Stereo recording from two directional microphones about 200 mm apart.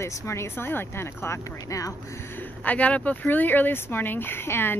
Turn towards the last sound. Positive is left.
turn(degrees=10)  # may be behind; listen again after turning